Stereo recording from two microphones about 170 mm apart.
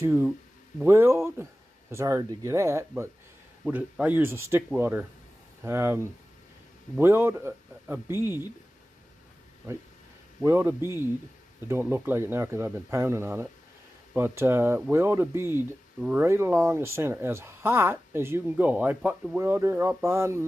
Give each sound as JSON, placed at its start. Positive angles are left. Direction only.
{"t": 0.0, "sound": "speech", "side_deg": -15}
{"t": 10.4, "sound": "speech", "side_deg": -15}